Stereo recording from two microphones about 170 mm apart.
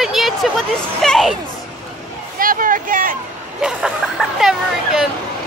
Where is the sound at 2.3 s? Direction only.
55° right (ahead or behind).